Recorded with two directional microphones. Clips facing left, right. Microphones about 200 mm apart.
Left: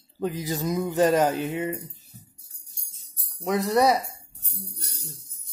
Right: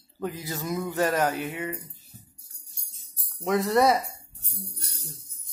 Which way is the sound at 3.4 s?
Centre (ahead or behind).